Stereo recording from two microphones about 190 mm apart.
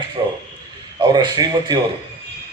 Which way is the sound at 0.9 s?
20° right (ahead or behind).